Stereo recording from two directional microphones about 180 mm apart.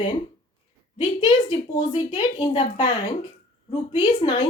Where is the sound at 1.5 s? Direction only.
35° left (ahead or behind).